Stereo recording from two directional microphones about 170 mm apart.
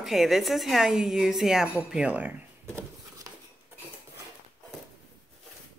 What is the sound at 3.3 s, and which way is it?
Cutlery, 20° right (ahead or behind).